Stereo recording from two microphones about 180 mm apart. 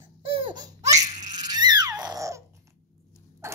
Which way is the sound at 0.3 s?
25° right (ahead or behind).